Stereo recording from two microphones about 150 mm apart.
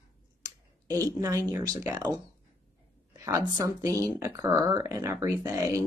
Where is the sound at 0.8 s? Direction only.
20° right (ahead or behind).